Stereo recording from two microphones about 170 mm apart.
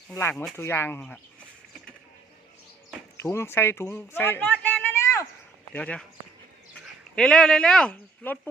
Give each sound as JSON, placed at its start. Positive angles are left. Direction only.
{"t": 0.1, "sound": "speech", "side_deg": 15}
{"t": 3.2, "sound": "speech", "side_deg": 15}
{"t": 5.7, "sound": "speech", "side_deg": 10}
{"t": 7.2, "sound": "speech", "side_deg": 5}